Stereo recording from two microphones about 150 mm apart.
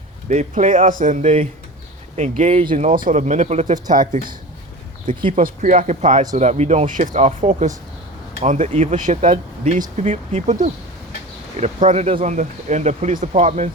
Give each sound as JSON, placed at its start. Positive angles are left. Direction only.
{"t": 0.3, "sound": "speech", "side_deg": -55}
{"t": 2.6, "sound": "speech", "side_deg": -60}
{"t": 5.3, "sound": "speech", "side_deg": -60}
{"t": 9.2, "sound": "speech", "side_deg": -35}
{"t": 9.7, "sound": "speech", "side_deg": -50}